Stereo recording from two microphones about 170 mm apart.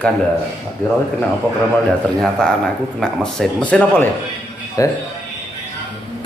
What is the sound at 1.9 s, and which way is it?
Speech, 5° left (ahead or behind).